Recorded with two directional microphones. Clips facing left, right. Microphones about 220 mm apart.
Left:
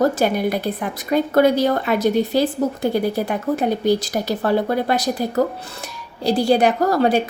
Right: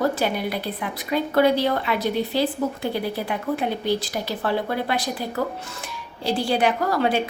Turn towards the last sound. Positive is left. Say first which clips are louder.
# left 5 dB
turn(degrees=40)  # may be behind; listen again after turning